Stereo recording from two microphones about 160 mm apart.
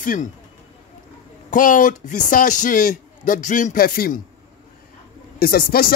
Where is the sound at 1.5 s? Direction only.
55° left (ahead or behind).